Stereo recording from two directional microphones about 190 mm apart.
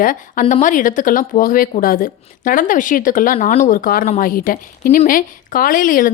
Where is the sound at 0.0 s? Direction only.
45° left (ahead or behind).